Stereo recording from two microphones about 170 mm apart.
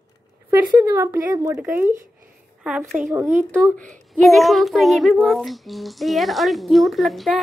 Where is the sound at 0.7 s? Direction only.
15° right (ahead or behind).